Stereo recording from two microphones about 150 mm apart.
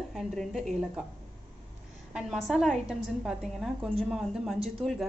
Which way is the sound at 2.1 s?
5° right (ahead or behind).